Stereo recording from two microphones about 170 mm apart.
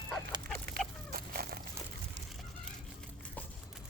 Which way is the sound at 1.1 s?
65° right (ahead or behind).